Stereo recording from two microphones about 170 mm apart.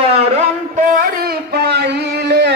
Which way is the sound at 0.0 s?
40° right (ahead or behind).